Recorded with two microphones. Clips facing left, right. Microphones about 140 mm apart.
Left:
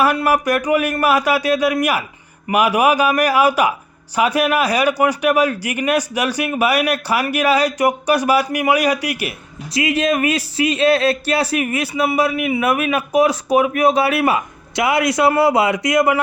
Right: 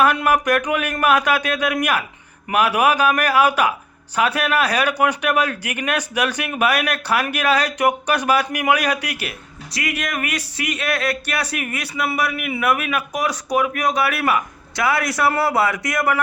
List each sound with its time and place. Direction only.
0.0 s speech: 5° left (ahead or behind)
9.7 s speech: 25° left (ahead or behind)